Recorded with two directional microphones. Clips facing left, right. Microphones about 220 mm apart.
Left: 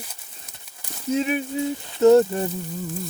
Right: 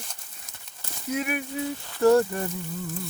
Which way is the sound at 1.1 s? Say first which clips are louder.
Left 6 dB; 25° left (ahead or behind).